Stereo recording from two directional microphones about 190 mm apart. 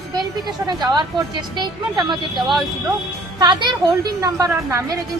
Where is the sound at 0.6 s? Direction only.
20° right (ahead or behind).